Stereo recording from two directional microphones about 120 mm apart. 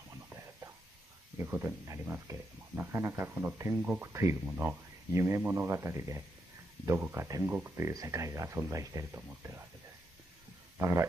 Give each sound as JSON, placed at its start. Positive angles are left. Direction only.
{"t": 0.1, "sound": "a sound", "side_deg": -20}
{"t": 1.4, "sound": "speech", "side_deg": -15}
{"t": 10.8, "sound": "speech", "side_deg": -25}